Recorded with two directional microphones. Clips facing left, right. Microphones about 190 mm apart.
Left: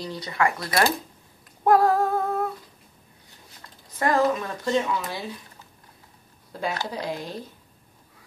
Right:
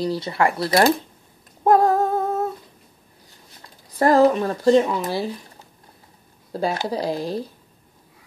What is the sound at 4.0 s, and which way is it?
Speech, 35° right (ahead or behind).